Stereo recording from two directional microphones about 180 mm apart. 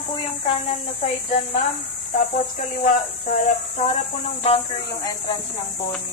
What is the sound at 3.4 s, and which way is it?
Speech, 35° left (ahead or behind).